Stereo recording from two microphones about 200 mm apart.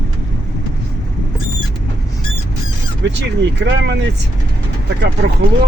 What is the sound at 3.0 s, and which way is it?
Speech, 60° right (ahead or behind).